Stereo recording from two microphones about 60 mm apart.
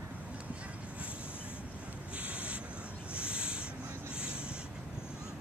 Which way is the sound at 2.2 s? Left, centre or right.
Right.